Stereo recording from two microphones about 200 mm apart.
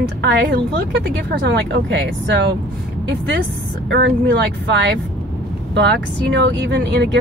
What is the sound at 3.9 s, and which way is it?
Speech, 60° right (ahead or behind).